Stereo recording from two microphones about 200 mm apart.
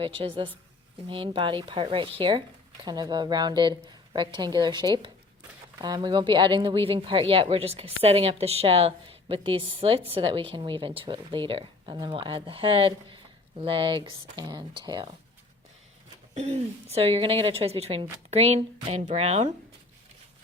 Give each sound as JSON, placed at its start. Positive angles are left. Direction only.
{"t": 0.0, "sound": "speech", "side_deg": -25}
{"t": 16.3, "sound": "a woman's voice", "side_deg": -30}